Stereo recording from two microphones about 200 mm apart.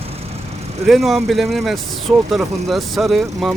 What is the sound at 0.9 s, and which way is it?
Speech, centre (ahead or behind).